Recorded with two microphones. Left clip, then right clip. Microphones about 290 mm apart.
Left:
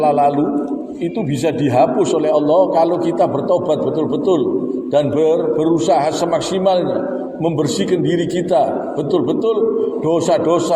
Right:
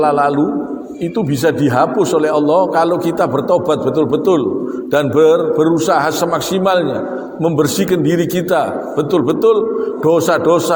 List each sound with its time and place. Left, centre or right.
0.0 s a man's voice: right
1.5 s a man's voice: right
10.1 s a man's voice: right